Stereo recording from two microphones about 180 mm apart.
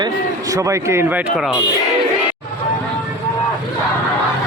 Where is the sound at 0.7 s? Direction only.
15° right (ahead or behind).